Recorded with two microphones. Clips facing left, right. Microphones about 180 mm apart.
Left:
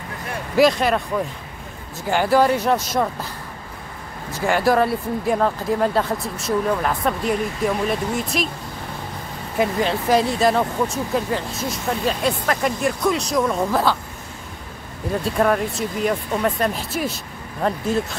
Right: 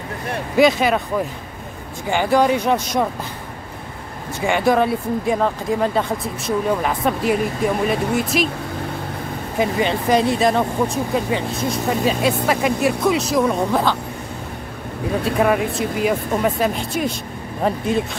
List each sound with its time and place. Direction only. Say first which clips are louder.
0.6 s speech: right 1 dB; centre (ahead or behind)
2.0 s speech: even; 5° left (ahead or behind)
4.3 s speech: right 1 dB; centre (ahead or behind)
9.6 s speech: right 1 dB; centre (ahead or behind)
15.2 s speech: right 1 dB; 5° right (ahead or behind)